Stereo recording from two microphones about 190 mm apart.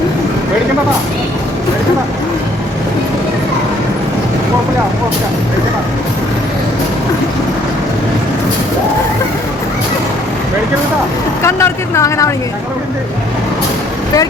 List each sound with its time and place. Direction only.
11.4 s speech: 15° left (ahead or behind)